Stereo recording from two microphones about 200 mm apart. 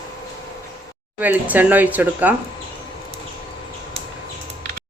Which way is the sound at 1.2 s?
10° right (ahead or behind).